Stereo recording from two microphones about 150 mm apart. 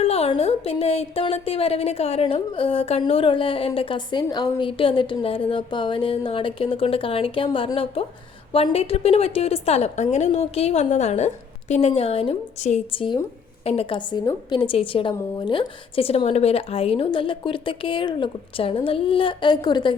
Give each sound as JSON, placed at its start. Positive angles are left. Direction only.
{"t": 0.0, "sound": "a woman's voice", "side_deg": 40}